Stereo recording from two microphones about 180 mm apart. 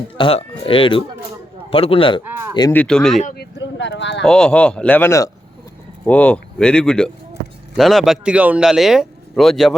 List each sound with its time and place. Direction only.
0.2 s speech: 30° left (ahead or behind)
2.2 s a sound: 10° right (ahead or behind)
2.7 s speech: 5° left (ahead or behind)
3.5 s vehicle: 80° left
4.2 s speech: 5° left (ahead or behind)